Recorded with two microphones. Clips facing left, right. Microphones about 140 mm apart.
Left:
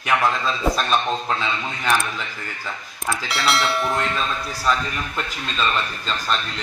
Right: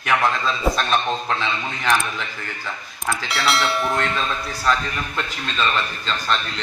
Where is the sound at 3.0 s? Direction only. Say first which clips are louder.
Even; centre (ahead or behind).